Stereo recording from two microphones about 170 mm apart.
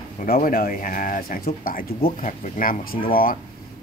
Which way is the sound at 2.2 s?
45° left (ahead or behind).